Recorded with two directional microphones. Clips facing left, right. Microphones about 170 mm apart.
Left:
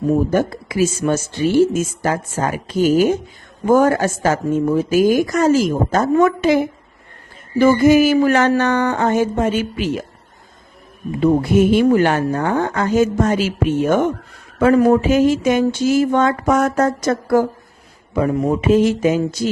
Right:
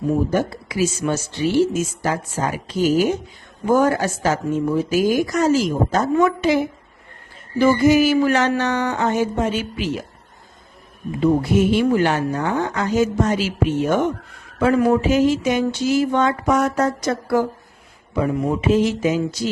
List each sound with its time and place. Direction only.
0.3 s a woman's voice: 50° left (ahead or behind)
7.6 s a woman's voice: 50° left (ahead or behind)
11.5 s a woman's voice: 50° left (ahead or behind)